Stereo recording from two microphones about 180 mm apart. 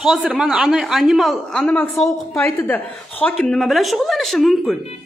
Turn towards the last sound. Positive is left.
turn(degrees=0)  # may be behind; listen again after turning